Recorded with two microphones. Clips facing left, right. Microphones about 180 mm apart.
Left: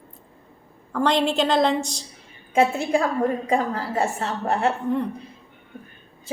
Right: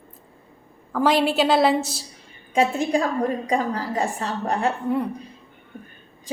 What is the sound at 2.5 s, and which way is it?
A woman's voice, 15° right (ahead or behind).